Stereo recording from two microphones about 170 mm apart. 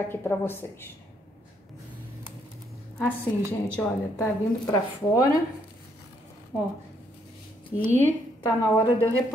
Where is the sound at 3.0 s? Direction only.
10° left (ahead or behind).